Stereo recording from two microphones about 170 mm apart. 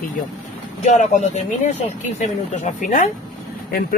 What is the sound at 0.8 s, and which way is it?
Speech, 40° left (ahead or behind).